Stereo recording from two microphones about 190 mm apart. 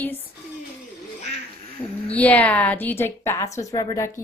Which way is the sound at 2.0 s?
10° left (ahead or behind).